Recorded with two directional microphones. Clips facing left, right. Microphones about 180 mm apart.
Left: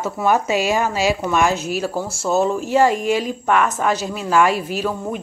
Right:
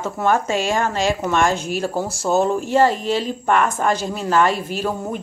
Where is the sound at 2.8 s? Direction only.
10° left (ahead or behind).